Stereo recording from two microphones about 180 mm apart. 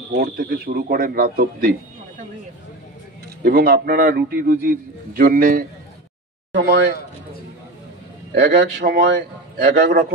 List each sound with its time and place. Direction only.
0.1 s a man's voice: 60° right (ahead or behind)
3.4 s a man's voice: 55° right (ahead or behind)
6.5 s a man's voice: 65° right (ahead or behind)
8.4 s a man's voice: 70° right (ahead or behind)